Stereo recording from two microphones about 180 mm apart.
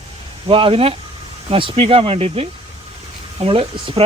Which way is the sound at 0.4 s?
30° right (ahead or behind).